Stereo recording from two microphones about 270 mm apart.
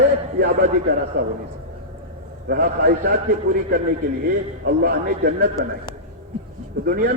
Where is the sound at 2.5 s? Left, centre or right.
Right.